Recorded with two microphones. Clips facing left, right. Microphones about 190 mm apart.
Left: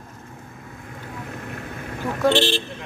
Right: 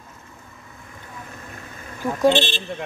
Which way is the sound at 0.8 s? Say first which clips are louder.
Left 5 dB; 60° left (ahead or behind).